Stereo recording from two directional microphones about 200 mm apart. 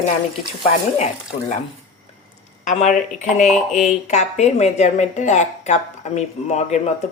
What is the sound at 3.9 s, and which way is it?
Speech, 35° left (ahead or behind).